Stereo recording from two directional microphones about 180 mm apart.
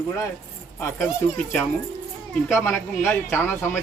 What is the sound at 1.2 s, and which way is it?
Speech, 10° left (ahead or behind).